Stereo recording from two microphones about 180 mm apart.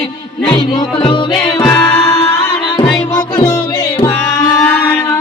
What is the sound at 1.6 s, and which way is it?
Music, 5° left (ahead or behind).